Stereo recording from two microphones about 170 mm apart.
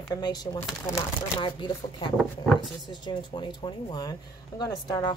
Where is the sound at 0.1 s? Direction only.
25° left (ahead or behind).